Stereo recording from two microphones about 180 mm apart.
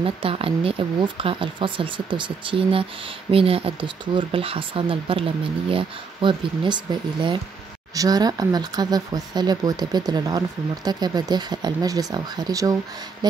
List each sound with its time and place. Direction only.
0.0 s speech: 30° right (ahead or behind)